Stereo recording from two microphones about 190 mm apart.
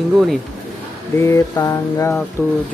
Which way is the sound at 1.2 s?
15° left (ahead or behind).